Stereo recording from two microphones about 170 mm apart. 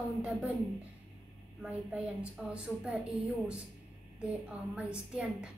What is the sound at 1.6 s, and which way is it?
A woman's voice, 5° right (ahead or behind).